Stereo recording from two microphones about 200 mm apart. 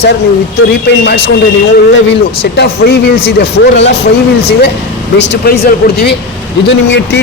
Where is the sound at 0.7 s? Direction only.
55° left (ahead or behind).